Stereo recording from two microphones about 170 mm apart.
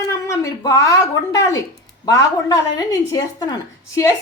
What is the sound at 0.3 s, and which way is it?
A woman's voice, 20° left (ahead or behind).